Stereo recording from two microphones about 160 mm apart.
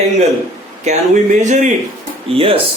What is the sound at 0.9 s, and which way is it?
Speech, 45° right (ahead or behind).